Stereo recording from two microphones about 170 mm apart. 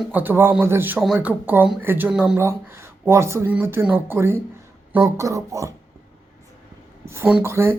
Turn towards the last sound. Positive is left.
turn(degrees=-15)  # may be behind; listen again after turning